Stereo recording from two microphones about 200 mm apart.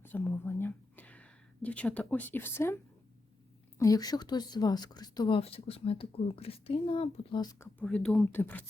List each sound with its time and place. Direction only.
0.0 s speech: 10° left (ahead or behind)
3.8 s speech: 15° left (ahead or behind)
7.8 s speech: 5° left (ahead or behind)